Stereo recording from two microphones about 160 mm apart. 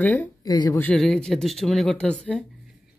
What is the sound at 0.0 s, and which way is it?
Speech, 10° left (ahead or behind).